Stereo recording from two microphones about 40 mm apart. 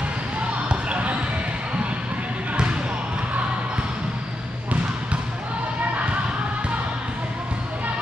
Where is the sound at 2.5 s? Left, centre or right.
Right.